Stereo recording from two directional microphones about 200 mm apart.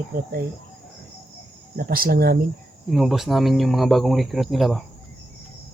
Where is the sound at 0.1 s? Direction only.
45° right (ahead or behind).